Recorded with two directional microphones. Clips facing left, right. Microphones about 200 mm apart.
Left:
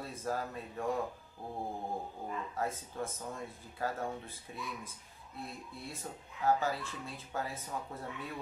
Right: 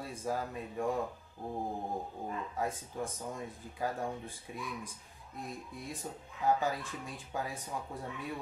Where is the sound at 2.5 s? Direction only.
15° right (ahead or behind).